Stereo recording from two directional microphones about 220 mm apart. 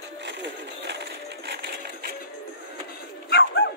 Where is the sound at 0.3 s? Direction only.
50° right (ahead or behind).